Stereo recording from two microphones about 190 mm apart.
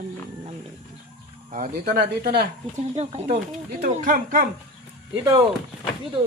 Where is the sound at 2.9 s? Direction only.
35° right (ahead or behind).